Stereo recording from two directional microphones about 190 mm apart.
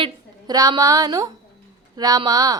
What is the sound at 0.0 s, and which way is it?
A woman's voice, 20° right (ahead or behind).